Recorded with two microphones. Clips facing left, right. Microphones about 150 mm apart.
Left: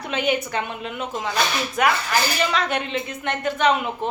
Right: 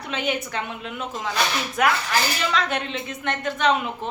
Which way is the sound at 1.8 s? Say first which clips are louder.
Left 1 dB; centre (ahead or behind).